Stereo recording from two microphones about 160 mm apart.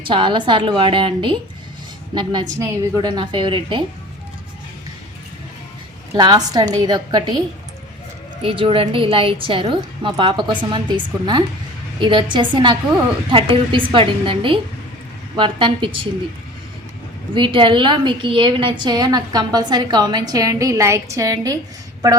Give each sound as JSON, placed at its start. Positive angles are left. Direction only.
{"t": 0.0, "sound": "a woman's voice", "side_deg": -30}
{"t": 2.6, "sound": "a woman's voice", "side_deg": -15}
{"t": 6.1, "sound": "a woman's voice", "side_deg": -25}
{"t": 17.3, "sound": "a woman's voice", "side_deg": -30}